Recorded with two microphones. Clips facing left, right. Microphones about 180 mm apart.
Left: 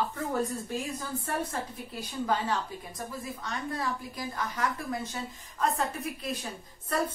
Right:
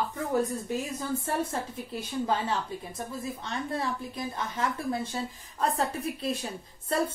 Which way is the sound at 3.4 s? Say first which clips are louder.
Right 1 dB; 25° right (ahead or behind).